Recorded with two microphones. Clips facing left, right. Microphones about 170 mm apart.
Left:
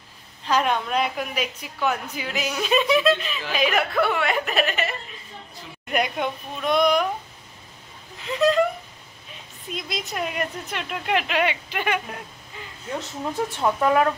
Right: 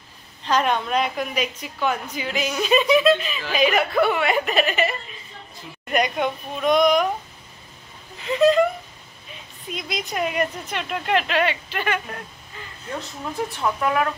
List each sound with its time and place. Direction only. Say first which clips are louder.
0.5 s a woman's voice: right 1 dB; 5° left (ahead or behind)
8.3 s speech: right 3 dB; centre (ahead or behind)
9.7 s a woman's voice: right 2 dB; centre (ahead or behind)
13.6 s speech: left 3 dB; 30° left (ahead or behind)